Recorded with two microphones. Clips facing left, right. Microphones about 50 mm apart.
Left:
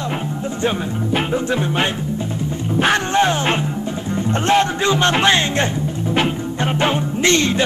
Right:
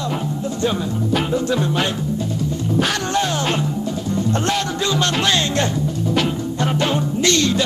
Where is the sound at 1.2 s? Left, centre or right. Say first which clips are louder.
Even; left.